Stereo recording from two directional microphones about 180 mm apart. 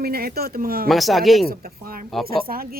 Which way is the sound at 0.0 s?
60° right (ahead or behind).